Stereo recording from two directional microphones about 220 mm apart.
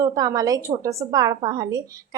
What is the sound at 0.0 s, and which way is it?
A woman's voice, 15° right (ahead or behind).